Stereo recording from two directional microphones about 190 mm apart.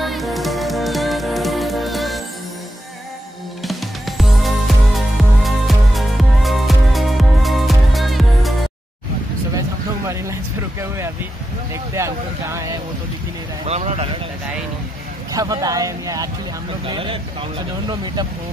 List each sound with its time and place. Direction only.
0.0 s music: centre (ahead or behind)
4.2 s music: centre (ahead or behind)
11.7 s vehicle: 15° right (ahead or behind)
13.7 s a sound: 35° right (ahead or behind)
15.3 s a sound: 20° right (ahead or behind)
16.8 s speech: 25° right (ahead or behind)